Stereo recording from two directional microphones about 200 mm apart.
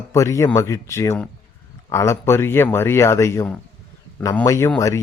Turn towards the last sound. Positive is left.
turn(degrees=15)  # may be behind; listen again after turning